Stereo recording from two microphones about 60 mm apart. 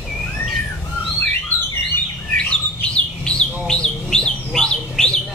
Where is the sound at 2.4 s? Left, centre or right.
Centre.